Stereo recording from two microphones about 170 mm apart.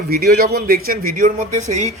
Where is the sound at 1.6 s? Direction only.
45° right (ahead or behind).